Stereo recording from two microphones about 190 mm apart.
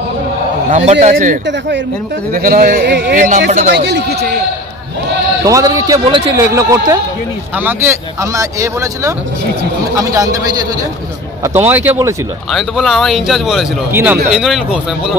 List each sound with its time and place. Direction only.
0.7 s a man's voice: 40° right (ahead or behind)
3.7 s speech: 60° right (ahead or behind)
5.4 s speech: 15° right (ahead or behind)
11.4 s speech: 10° right (ahead or behind)
12.4 s speech: centre (ahead or behind)